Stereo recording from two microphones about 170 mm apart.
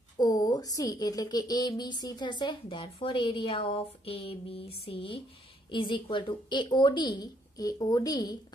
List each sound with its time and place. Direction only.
0.2 s a woman's voice: 20° left (ahead or behind)